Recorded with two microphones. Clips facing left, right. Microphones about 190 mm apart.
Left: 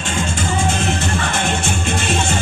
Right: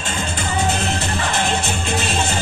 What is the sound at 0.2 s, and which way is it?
Music, 45° left (ahead or behind).